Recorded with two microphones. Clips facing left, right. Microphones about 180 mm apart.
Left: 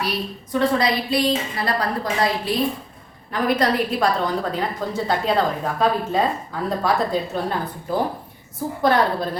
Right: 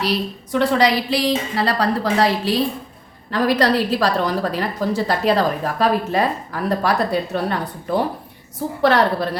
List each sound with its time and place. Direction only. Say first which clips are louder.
0.6 s a woman's voice: right 3 dB; 85° right